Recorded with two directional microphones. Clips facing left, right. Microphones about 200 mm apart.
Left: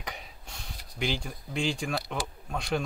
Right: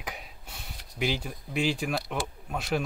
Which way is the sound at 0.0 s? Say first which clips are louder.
Right 1 dB; 5° right (ahead or behind).